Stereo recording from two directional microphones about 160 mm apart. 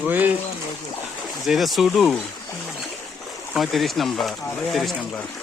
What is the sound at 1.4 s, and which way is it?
Speech, centre (ahead or behind).